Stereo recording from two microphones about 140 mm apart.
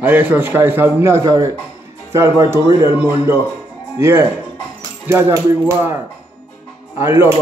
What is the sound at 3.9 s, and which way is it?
Speech, 20° right (ahead or behind).